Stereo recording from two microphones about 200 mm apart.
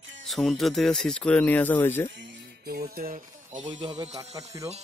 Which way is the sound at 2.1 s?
65° right (ahead or behind).